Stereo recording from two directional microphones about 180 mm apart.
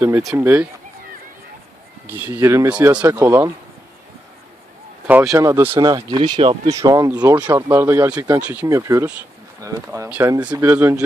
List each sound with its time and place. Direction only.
0.0 s speech: 15° right (ahead or behind)
2.0 s speech: 10° right (ahead or behind)
3.0 s speech: 20° right (ahead or behind)
5.0 s speech: 10° right (ahead or behind)
5.9 s speech: 25° right (ahead or behind)